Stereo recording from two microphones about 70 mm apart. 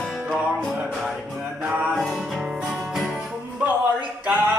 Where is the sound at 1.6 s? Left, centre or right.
Centre.